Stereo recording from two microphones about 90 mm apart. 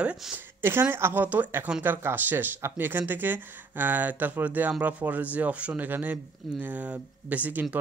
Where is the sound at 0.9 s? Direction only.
25° right (ahead or behind).